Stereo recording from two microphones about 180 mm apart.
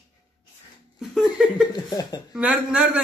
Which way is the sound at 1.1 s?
Centre (ahead or behind).